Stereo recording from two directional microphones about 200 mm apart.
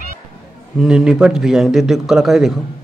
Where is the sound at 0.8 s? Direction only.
5° right (ahead or behind).